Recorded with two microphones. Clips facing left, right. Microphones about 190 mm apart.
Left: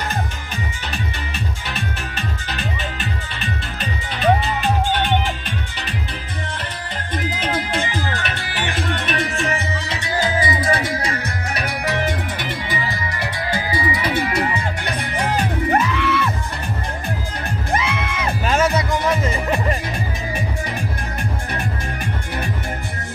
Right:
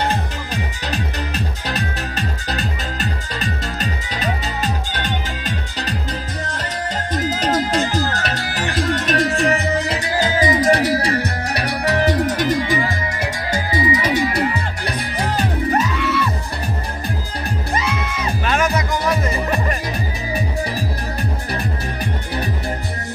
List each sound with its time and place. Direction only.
0.9 s music: 40° right (ahead or behind)
7.2 s music: 40° right (ahead or behind)
11.0 s music: 65° right (ahead or behind)
11.9 s music: 35° right (ahead or behind)
15.7 s music: 60° left (ahead or behind)
17.7 s music: 60° left (ahead or behind)